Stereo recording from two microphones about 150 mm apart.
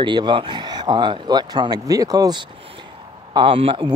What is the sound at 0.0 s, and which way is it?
Speech, 30° right (ahead or behind).